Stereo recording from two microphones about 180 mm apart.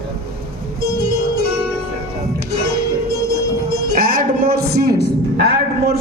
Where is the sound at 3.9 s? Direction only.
55° right (ahead or behind).